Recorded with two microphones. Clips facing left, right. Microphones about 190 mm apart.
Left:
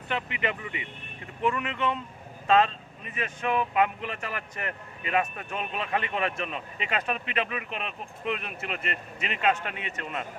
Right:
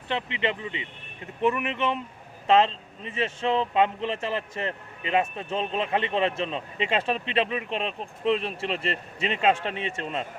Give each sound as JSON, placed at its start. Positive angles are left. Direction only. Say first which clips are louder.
{"t": 0.1, "sound": "speech", "louder": "right 3 dB", "side_deg": -25}